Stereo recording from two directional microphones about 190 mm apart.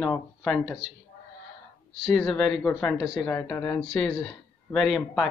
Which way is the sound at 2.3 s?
Centre (ahead or behind).